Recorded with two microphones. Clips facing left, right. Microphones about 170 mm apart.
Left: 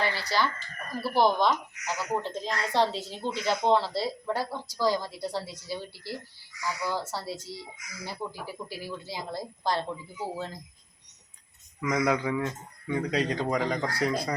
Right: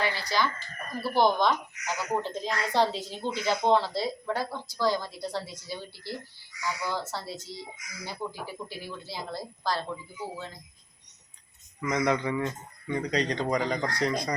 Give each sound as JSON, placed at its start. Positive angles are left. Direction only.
{"t": 0.2, "sound": "a woman's voice", "side_deg": 10}
{"t": 10.3, "sound": "speech", "side_deg": 40}
{"t": 11.8, "sound": "a woman's voice", "side_deg": 5}